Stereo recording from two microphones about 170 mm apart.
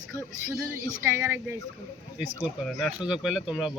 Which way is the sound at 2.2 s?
Centre (ahead or behind).